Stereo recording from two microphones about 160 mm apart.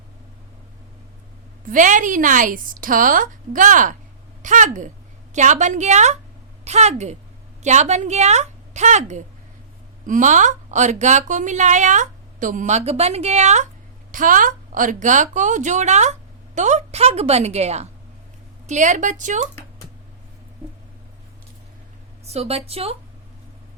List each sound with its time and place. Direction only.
1.6 s a woman's voice: 55° right (ahead or behind)
14.1 s a woman's voice: 55° right (ahead or behind)
22.3 s a woman's voice: 40° right (ahead or behind)